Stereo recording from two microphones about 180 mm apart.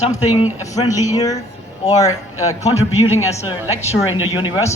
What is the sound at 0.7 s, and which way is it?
Speech, 20° left (ahead or behind).